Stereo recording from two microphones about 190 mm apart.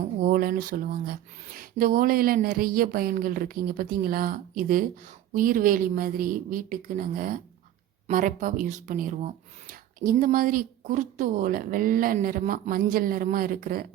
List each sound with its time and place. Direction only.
0.2 s speech: 50° right (ahead or behind)